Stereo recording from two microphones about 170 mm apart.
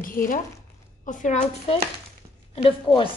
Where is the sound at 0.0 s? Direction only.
55° left (ahead or behind).